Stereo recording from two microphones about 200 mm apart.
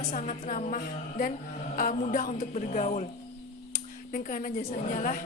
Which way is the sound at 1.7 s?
40° left (ahead or behind).